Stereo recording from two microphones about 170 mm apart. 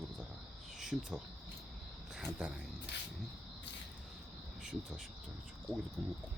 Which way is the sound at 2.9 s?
90° left.